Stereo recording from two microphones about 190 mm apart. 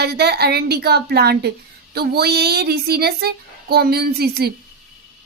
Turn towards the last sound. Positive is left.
turn(degrees=-55)  # may be behind; listen again after turning